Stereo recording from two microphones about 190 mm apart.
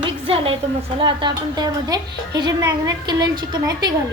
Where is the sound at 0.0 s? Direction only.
30° right (ahead or behind).